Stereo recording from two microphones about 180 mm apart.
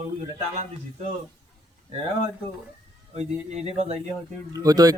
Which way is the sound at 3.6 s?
35° right (ahead or behind).